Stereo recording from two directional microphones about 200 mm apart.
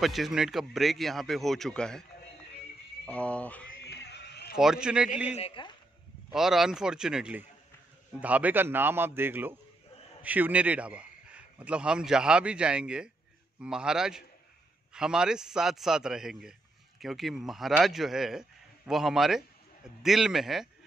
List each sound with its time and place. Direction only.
0.0 s speech: centre (ahead or behind)
3.1 s speech: 5° left (ahead or behind)
3.8 s music: 55° left (ahead or behind)
4.6 s speech: 5° right (ahead or behind)
5.3 s speech: 25° left (ahead or behind)
6.3 s a man's voice: centre (ahead or behind)